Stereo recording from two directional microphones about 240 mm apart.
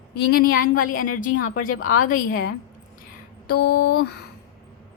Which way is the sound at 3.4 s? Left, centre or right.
Left.